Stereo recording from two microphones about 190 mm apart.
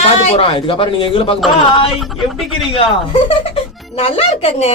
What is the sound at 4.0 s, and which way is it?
Speech, 30° left (ahead or behind).